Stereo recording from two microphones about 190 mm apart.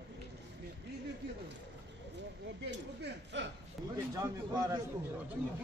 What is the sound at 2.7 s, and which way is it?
Speech, 65° right (ahead or behind).